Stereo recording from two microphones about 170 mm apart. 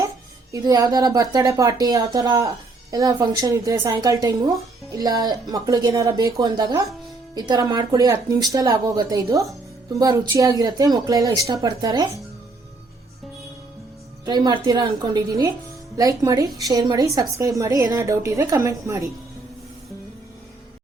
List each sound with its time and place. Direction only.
0.5 s speech: 20° right (ahead or behind)
14.3 s a woman's voice: 25° right (ahead or behind)